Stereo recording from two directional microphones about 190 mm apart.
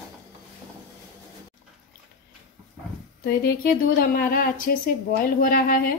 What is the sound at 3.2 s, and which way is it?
A woman's voice, 50° left (ahead or behind).